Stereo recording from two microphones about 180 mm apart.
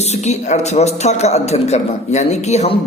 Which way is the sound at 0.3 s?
40° left (ahead or behind).